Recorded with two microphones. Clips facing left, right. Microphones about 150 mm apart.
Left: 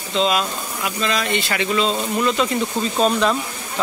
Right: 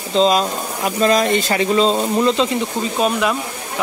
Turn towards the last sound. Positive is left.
turn(degrees=-10)  # may be behind; listen again after turning